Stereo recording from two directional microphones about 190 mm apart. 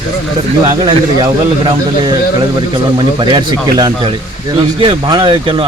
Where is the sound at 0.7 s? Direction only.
25° right (ahead or behind).